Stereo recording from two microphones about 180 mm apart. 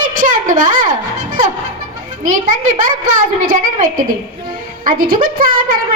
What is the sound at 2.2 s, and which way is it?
Speech, 50° right (ahead or behind).